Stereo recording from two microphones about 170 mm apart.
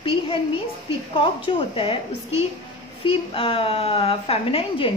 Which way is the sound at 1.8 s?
35° left (ahead or behind).